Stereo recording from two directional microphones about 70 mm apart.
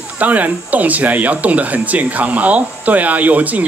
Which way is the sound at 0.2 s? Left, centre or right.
Right.